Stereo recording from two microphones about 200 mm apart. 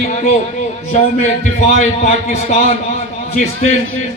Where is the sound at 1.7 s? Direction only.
35° left (ahead or behind).